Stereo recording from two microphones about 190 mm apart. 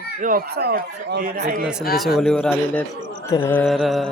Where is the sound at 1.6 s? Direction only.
5° right (ahead or behind).